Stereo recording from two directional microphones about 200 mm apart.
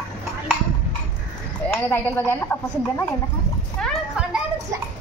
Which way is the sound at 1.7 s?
10° left (ahead or behind).